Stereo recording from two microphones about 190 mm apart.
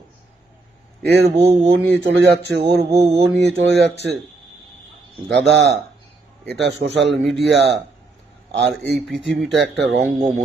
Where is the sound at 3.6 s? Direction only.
65° right (ahead or behind).